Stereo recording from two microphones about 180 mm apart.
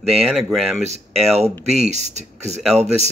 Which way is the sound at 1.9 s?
40° right (ahead or behind).